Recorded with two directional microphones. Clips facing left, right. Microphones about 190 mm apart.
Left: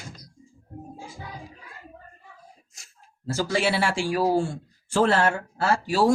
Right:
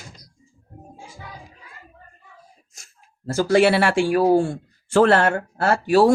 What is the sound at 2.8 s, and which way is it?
Speech, 55° right (ahead or behind).